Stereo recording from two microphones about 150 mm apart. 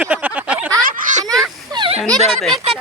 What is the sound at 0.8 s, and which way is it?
Baby laughter, 60° right (ahead or behind).